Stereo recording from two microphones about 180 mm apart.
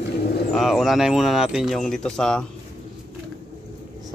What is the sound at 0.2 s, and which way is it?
Bird, 60° left (ahead or behind).